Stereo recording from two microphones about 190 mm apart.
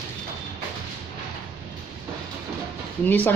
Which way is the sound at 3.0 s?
10° left (ahead or behind).